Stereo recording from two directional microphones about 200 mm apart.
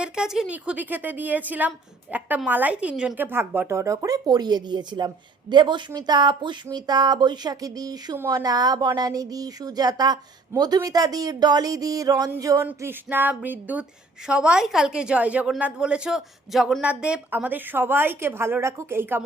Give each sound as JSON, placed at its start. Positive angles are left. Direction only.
{"t": 0.0, "sound": "a woman's voice", "side_deg": -5}